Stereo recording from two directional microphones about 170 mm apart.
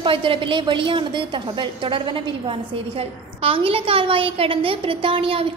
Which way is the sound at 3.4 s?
35° right (ahead or behind).